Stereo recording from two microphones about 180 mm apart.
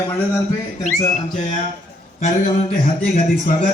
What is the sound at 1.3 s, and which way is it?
A man's voice, 40° left (ahead or behind).